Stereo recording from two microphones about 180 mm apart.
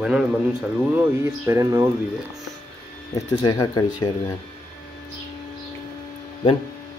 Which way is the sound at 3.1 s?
20° left (ahead or behind).